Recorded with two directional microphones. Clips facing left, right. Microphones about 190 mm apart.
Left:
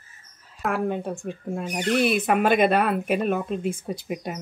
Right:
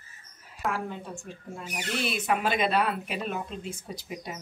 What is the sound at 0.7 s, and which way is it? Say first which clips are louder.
Speech: left 9 dB; 60° left (ahead or behind).